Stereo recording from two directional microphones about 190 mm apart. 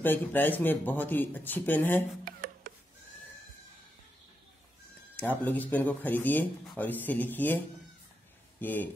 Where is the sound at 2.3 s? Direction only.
50° right (ahead or behind).